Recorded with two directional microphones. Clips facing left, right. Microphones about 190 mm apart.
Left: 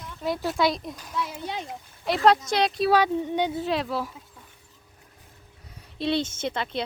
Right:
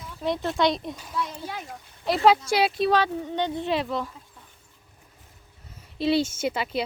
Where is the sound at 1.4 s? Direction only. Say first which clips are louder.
Left 2 dB; 20° left (ahead or behind).